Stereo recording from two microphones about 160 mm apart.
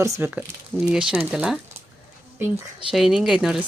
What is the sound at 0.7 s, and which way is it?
Speech, 5° right (ahead or behind).